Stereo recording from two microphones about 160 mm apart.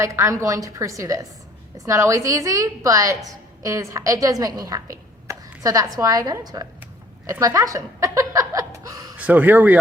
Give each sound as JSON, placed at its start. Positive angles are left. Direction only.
{"t": 0.0, "sound": "a woman's voice", "side_deg": -20}
{"t": 9.1, "sound": "speech", "side_deg": -10}